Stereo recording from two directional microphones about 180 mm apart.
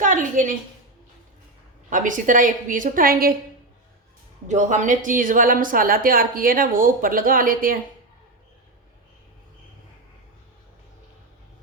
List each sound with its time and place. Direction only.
0.0 s a sound: 45° right (ahead or behind)
1.9 s a woman's voice: 45° right (ahead or behind)
4.4 s a woman's voice: 40° right (ahead or behind)